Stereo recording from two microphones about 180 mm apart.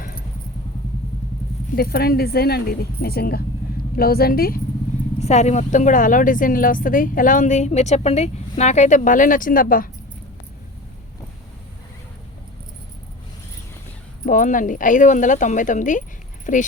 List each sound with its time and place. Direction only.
1.7 s speech: 55° left (ahead or behind)
5.2 s a woman's voice: 40° left (ahead or behind)
14.3 s a woman's voice: 45° left (ahead or behind)